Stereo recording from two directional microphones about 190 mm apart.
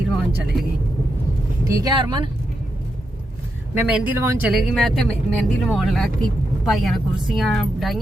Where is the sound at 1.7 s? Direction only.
20° right (ahead or behind).